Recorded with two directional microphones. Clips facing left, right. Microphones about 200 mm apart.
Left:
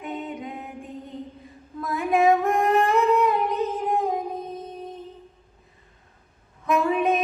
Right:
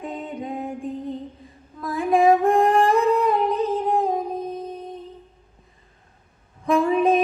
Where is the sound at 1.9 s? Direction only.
30° right (ahead or behind).